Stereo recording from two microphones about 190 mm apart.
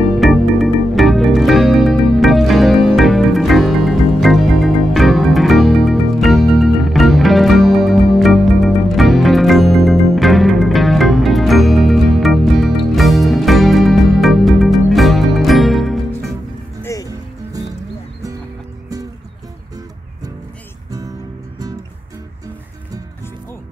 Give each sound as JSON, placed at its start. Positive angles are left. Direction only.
{"t": 0.2, "sound": "music", "side_deg": 0}
{"t": 16.8, "sound": "music", "side_deg": 15}